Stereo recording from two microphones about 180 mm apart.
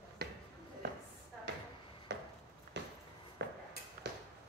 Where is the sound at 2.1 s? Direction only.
70° right (ahead or behind).